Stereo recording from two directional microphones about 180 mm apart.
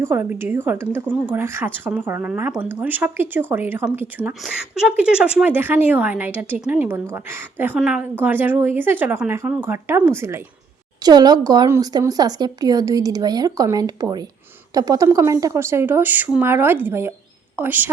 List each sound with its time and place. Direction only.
0.0 s a woman's voice: 10° right (ahead or behind)